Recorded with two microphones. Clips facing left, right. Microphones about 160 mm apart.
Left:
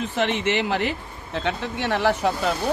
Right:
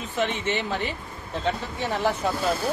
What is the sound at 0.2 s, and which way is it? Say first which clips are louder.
Speech: left 3 dB; 75° left (ahead or behind).